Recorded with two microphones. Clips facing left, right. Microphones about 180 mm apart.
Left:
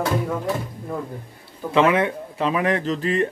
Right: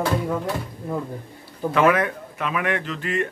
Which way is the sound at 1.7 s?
25° left (ahead or behind).